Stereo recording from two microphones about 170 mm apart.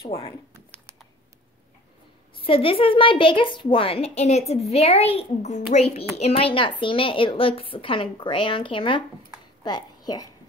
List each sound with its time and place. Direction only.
2.4 s a woman's voice: 30° left (ahead or behind)